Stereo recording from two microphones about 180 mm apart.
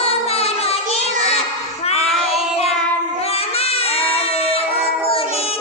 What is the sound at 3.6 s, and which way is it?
Baby cry, 35° left (ahead or behind).